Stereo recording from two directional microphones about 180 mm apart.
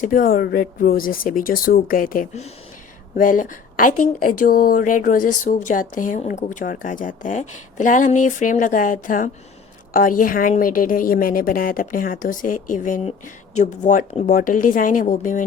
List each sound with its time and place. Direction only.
0.0 s a woman's voice: 50° left (ahead or behind)